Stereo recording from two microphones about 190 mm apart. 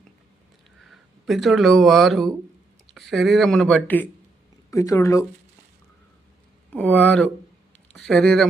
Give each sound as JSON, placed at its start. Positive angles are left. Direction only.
{"t": 0.9, "sound": "speech", "side_deg": 0}
{"t": 6.7, "sound": "speech", "side_deg": 10}